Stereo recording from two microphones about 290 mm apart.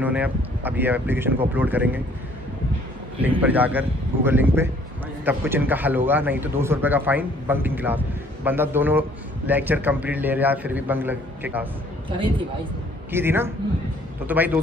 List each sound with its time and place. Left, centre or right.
0.0 s speech: centre
3.2 s a man's voice: centre
12.1 s speech: centre